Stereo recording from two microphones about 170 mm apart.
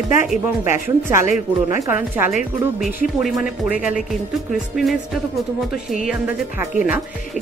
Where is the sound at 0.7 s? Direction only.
15° right (ahead or behind).